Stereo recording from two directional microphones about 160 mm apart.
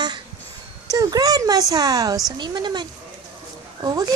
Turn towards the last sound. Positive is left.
turn(degrees=-25)  # may be behind; listen again after turning